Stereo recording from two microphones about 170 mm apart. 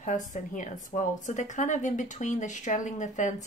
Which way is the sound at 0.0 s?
45° left (ahead or behind).